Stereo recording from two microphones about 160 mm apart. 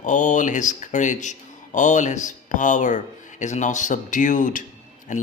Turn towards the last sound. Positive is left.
turn(degrees=50)  # may be behind; listen again after turning